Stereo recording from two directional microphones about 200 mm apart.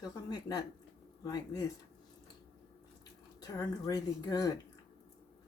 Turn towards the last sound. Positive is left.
turn(degrees=20)  # may be behind; listen again after turning